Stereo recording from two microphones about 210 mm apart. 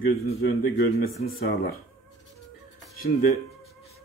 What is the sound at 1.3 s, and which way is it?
Speech, 45° left (ahead or behind).